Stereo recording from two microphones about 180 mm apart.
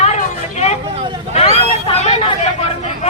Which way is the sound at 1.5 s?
35° left (ahead or behind).